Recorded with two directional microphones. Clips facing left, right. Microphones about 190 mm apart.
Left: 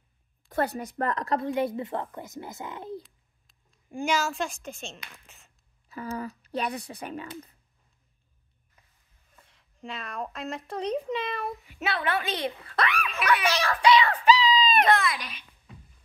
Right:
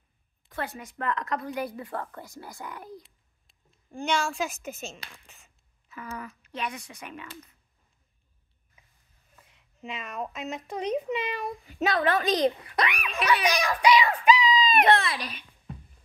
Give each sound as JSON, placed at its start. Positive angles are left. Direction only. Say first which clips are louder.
{"t": 0.5, "sound": "a woman's voice", "louder": "left 7 dB", "side_deg": 40}
{"t": 3.9, "sound": "a child's voice", "louder": "left 1 dB", "side_deg": 5}
{"t": 5.9, "sound": "speech", "louder": "left 5 dB", "side_deg": 35}
{"t": 9.4, "sound": "speech", "louder": "even", "side_deg": -5}
{"t": 11.6, "sound": "a woman's voice", "louder": "right 8 dB", "side_deg": -40}
{"t": 12.6, "sound": "a child's voice", "louder": "left 1 dB", "side_deg": -15}
{"t": 14.4, "sound": "a sound", "louder": "even", "side_deg": -15}
{"t": 14.9, "sound": "a woman's voice", "louder": "right 1 dB", "side_deg": -30}
{"t": 15.3, "sound": "a sound", "louder": "right 6 dB", "side_deg": -45}